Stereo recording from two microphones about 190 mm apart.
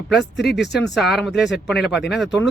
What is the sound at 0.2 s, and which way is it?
Speech, 60° left (ahead or behind).